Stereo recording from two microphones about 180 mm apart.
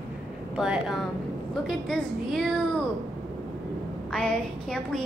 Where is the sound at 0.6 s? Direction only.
5° right (ahead or behind).